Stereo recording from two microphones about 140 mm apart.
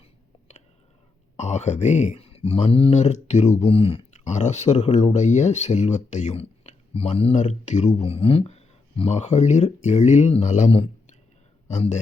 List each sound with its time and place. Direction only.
1.4 s speech: 55° left (ahead or behind)
4.2 s speech: 55° left (ahead or behind)
11.7 s a man's voice: 55° left (ahead or behind)